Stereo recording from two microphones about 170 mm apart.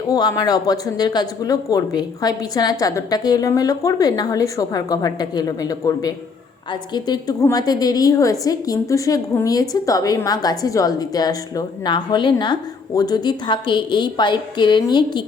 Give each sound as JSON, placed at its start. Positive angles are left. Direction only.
{"t": 0.1, "sound": "a woman's voice", "side_deg": 25}